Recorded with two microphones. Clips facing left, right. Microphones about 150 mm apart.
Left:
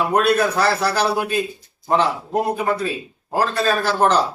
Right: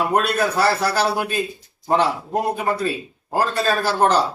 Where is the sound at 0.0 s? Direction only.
5° right (ahead or behind).